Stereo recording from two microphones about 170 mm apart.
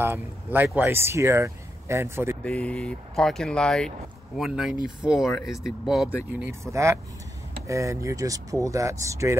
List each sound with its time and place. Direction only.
0.0 s speech: 10° right (ahead or behind)
2.4 s speech: 5° left (ahead or behind)
6.2 s speech: 15° right (ahead or behind)